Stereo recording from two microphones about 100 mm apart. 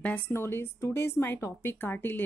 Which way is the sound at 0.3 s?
25° left (ahead or behind).